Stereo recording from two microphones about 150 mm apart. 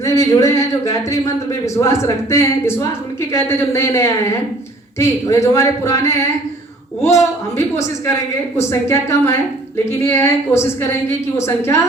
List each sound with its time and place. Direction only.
0.0 s a woman's voice: 20° left (ahead or behind)